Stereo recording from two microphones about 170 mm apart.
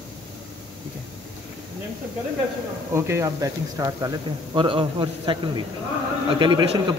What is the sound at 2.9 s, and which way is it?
Speech, 15° right (ahead or behind).